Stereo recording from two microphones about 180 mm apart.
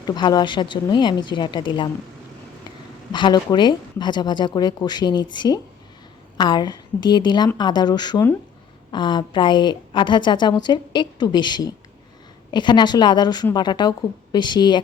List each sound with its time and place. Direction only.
0.0 s a woman's voice: 25° left (ahead or behind)
3.1 s a woman's voice: 25° left (ahead or behind)